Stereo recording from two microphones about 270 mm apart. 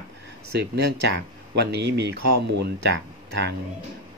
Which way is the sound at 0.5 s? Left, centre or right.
Right.